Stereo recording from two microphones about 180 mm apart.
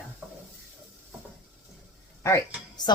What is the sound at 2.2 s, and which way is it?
Speech, 15° left (ahead or behind).